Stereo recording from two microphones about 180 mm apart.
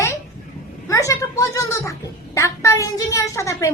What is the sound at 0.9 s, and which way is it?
A child's voice, 15° left (ahead or behind).